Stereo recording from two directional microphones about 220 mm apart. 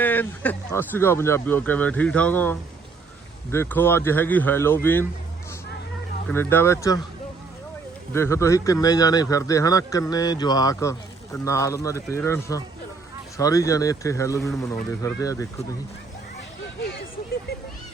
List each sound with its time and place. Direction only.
0.0 s speech: 10° left (ahead or behind)
6.2 s speech: 10° left (ahead or behind)
8.1 s speech: 10° left (ahead or behind)